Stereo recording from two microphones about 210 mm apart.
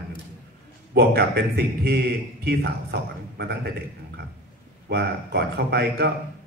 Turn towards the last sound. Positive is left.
turn(degrees=-50)  # may be behind; listen again after turning